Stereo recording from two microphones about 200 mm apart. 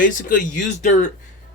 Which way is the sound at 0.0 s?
40° left (ahead or behind).